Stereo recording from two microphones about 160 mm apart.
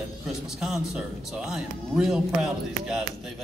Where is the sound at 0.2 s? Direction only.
5° right (ahead or behind).